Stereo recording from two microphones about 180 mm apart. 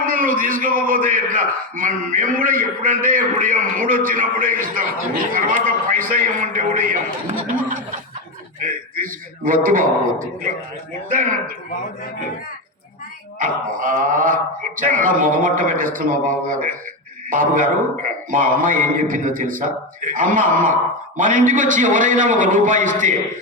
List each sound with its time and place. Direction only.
0.0 s a man's voice: 50° right (ahead or behind)
8.6 s a man's voice: 50° right (ahead or behind)
13.4 s a man's voice: 50° right (ahead or behind)